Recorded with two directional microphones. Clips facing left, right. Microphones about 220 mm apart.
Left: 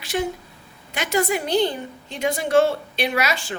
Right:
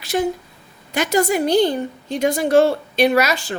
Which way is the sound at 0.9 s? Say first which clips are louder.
Right 5 dB; 40° right (ahead or behind).